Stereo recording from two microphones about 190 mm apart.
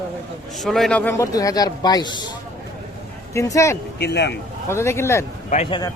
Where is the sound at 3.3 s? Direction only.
15° left (ahead or behind).